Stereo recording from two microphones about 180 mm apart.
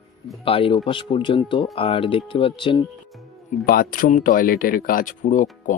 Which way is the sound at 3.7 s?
55° left (ahead or behind).